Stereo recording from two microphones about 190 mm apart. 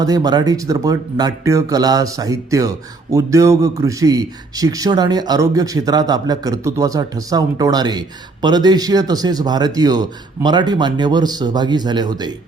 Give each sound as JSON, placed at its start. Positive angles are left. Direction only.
{"t": 0.0, "sound": "speech", "side_deg": -20}